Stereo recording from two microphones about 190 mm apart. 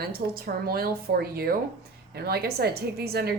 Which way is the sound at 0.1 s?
55° right (ahead or behind).